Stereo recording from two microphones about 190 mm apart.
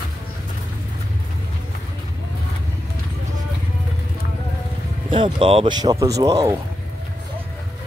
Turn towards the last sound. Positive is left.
turn(degrees=-20)  # may be behind; listen again after turning